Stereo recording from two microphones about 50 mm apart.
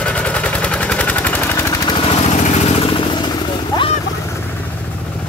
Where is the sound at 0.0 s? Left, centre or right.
Left.